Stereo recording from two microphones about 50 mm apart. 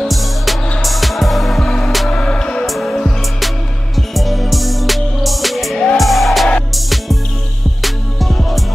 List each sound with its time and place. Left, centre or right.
0.0 s music: centre
2.0 s music: centre
2.6 s music: centre